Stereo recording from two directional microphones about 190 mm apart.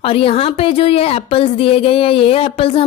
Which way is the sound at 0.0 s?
30° left (ahead or behind).